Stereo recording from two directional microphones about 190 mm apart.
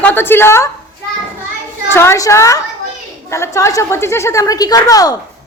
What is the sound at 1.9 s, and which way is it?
A woman's voice, 15° left (ahead or behind).